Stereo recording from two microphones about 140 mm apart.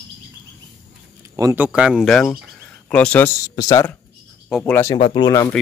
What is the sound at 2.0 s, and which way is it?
Speech, 5° left (ahead or behind).